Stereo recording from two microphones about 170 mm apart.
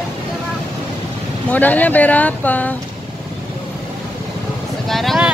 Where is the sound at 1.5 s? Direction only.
10° left (ahead or behind).